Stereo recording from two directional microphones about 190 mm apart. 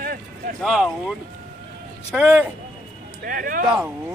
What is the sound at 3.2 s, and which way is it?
Speech, 45° right (ahead or behind).